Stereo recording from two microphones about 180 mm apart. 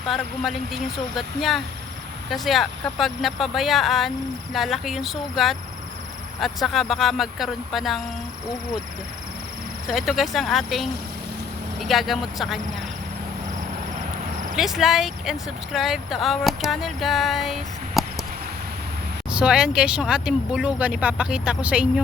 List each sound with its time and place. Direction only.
0.0 s speech: centre (ahead or behind)
9.8 s speech: centre (ahead or behind)
14.5 s speech: centre (ahead or behind)
19.3 s speech: 5° right (ahead or behind)